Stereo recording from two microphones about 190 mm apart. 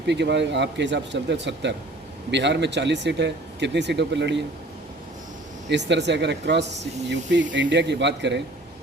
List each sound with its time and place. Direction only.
0.1 s speech: 65° right (ahead or behind)
5.6 s speech: 65° right (ahead or behind)